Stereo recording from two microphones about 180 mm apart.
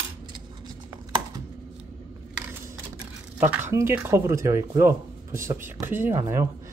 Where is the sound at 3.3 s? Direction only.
10° right (ahead or behind).